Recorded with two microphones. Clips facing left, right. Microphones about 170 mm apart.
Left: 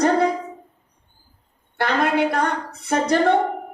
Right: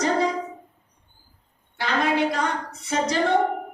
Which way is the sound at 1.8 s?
60° left (ahead or behind).